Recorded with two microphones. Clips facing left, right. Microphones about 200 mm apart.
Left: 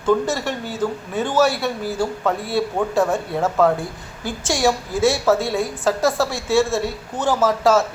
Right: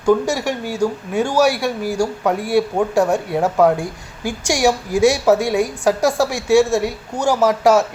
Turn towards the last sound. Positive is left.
turn(degrees=-15)  # may be behind; listen again after turning